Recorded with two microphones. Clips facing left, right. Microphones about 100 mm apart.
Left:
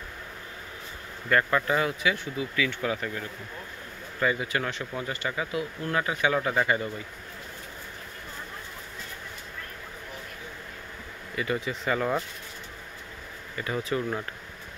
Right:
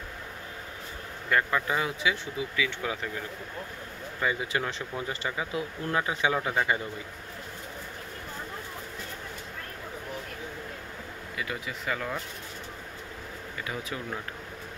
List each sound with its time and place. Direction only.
1.3 s speech: 10° right (ahead or behind)
4.5 s speech: 30° right (ahead or behind)
11.3 s speech: 5° right (ahead or behind)
13.6 s speech: 5° right (ahead or behind)